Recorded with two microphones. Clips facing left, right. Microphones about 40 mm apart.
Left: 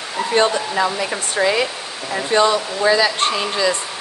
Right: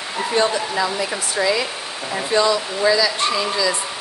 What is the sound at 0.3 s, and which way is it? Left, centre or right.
Speech, left.